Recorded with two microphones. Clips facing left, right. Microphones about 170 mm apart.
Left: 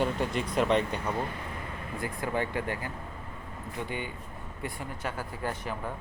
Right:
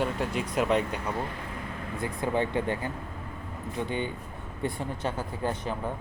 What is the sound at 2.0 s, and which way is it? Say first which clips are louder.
Speech: right 3 dB; 20° right (ahead or behind).